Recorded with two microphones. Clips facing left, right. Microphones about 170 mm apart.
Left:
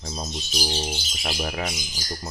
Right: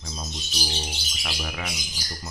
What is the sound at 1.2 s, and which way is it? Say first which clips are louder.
Speech: left 5 dB; 35° left (ahead or behind).